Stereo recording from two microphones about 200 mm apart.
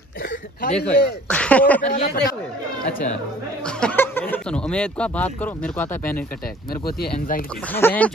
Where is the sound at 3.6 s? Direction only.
5° left (ahead or behind).